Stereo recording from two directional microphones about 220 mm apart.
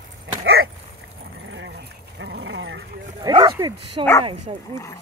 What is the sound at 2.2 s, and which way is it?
Dog, 55° right (ahead or behind).